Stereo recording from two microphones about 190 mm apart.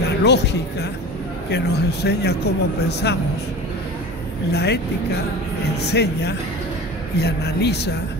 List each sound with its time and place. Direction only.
0.2 s speech: 65° left (ahead or behind)
4.5 s speech: 60° left (ahead or behind)
5.9 s speech: 60° left (ahead or behind)